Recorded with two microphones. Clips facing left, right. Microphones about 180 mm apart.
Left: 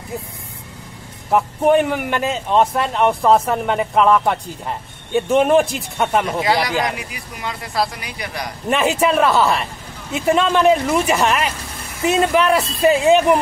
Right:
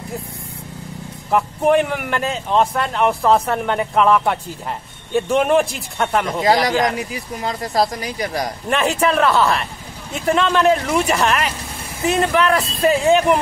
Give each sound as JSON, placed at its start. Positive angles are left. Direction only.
{"t": 1.3, "sound": "speech", "side_deg": 5}
{"t": 6.4, "sound": "speech", "side_deg": -40}
{"t": 8.6, "sound": "a man's voice", "side_deg": 5}